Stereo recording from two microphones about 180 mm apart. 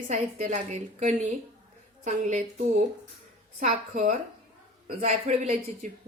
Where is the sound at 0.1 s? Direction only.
40° right (ahead or behind).